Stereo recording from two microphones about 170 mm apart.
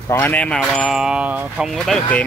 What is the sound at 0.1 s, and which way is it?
Speech, 10° left (ahead or behind).